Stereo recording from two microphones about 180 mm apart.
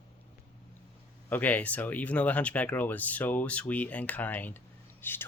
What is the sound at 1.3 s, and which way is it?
Speech, 10° left (ahead or behind).